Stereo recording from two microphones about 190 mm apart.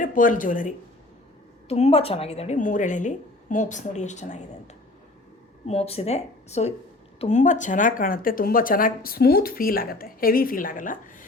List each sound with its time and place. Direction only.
0.0 s speech: 45° left (ahead or behind)
1.6 s speech: 35° left (ahead or behind)
5.6 s speech: 35° left (ahead or behind)